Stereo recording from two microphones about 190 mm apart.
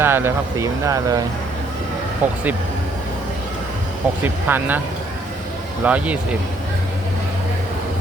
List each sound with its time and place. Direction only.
0.0 s speech: 10° right (ahead or behind)
2.2 s speech: 10° right (ahead or behind)
4.2 s speech: 10° right (ahead or behind)
5.8 s speech: 5° right (ahead or behind)